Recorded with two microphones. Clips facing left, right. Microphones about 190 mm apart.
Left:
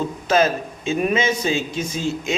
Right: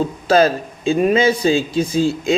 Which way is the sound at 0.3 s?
35° right (ahead or behind).